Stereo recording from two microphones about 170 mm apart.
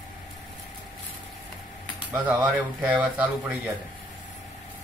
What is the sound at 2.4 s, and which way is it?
Speech, 10° right (ahead or behind).